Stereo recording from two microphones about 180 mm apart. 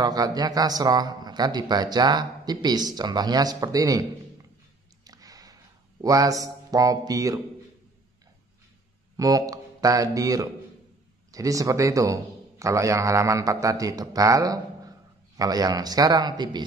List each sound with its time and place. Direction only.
0.0 s a man's voice: 20° right (ahead or behind)
5.0 s a sound: 20° right (ahead or behind)
9.1 s a man's voice: 20° right (ahead or behind)